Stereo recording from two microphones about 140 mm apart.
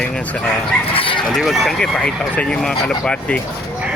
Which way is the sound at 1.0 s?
40° left (ahead or behind).